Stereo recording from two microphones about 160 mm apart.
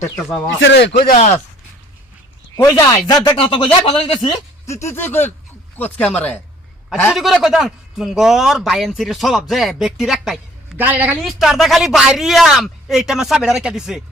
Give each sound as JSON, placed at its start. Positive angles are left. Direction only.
{"t": 0.6, "sound": "a man's voice", "side_deg": 90}
{"t": 2.6, "sound": "speech", "side_deg": 20}
{"t": 4.7, "sound": "a man's voice", "side_deg": 15}